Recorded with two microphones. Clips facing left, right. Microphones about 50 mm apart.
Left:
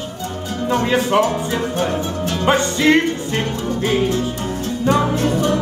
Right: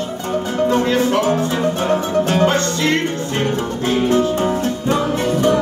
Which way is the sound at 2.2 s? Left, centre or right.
Right.